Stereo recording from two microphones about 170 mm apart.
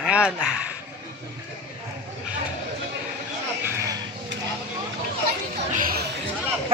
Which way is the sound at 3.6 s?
15° right (ahead or behind).